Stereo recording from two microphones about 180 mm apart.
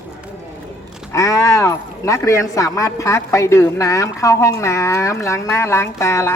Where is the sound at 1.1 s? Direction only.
15° left (ahead or behind).